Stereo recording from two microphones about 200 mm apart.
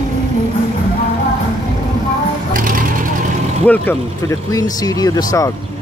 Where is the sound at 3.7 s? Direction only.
10° left (ahead or behind).